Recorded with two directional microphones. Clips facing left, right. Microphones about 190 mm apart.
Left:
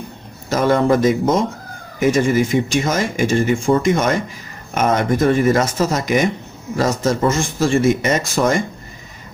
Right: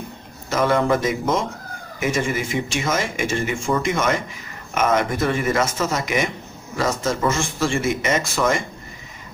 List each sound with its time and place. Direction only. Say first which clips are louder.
0.5 s speech: left 4 dB; 40° left (ahead or behind)